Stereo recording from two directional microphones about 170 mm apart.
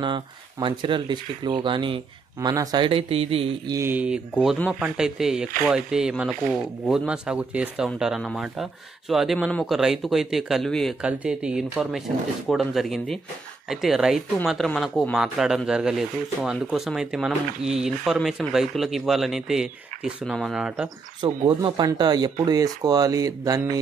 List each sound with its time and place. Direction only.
0.0 s speech: 25° right (ahead or behind)
3.7 s speech: 15° right (ahead or behind)
21.5 s speech: 30° right (ahead or behind)